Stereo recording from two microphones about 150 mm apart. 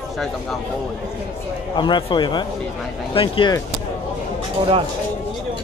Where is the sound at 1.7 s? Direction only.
30° left (ahead or behind).